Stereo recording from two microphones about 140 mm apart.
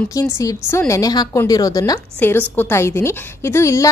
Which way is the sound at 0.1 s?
25° left (ahead or behind).